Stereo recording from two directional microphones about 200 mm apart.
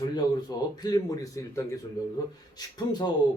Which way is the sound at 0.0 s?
20° left (ahead or behind).